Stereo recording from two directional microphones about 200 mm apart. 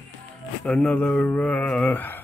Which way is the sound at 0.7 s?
5° left (ahead or behind).